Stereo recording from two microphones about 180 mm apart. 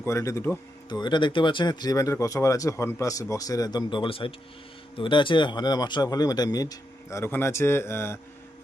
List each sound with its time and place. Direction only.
0.0 s speech: 15° left (ahead or behind)